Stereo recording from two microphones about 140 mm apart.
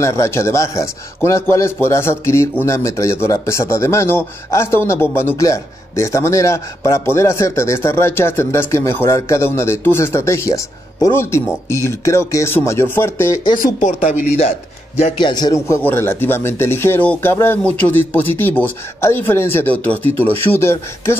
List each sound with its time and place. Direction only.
0.0 s speech: 20° left (ahead or behind)
13.7 s speech: 65° left (ahead or behind)
15.1 s speech: 30° left (ahead or behind)